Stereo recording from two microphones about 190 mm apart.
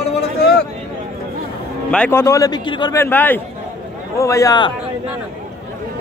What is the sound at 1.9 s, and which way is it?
A man's voice, 10° left (ahead or behind).